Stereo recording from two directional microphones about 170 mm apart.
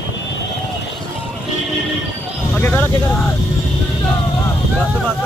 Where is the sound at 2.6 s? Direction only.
10° left (ahead or behind).